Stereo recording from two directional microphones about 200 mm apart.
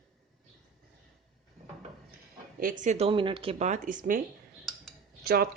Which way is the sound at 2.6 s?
40° right (ahead or behind).